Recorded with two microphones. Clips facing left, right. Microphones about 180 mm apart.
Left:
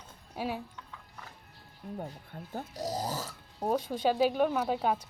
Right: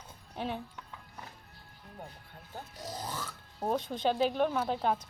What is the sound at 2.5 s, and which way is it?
Speech, 40° left (ahead or behind).